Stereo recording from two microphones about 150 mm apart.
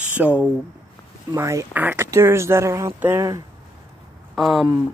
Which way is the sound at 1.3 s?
20° right (ahead or behind).